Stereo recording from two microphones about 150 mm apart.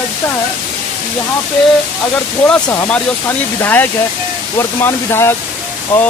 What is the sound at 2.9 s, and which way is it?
Speech, 15° left (ahead or behind).